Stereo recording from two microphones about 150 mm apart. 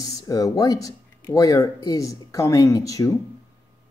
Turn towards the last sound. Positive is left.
turn(degrees=20)  # may be behind; listen again after turning